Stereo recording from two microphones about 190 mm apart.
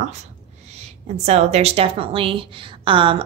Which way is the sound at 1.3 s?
35° right (ahead or behind).